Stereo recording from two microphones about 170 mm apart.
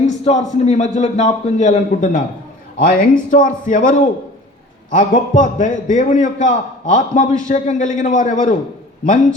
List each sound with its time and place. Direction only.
0.0 s a man's voice: 40° left (ahead or behind)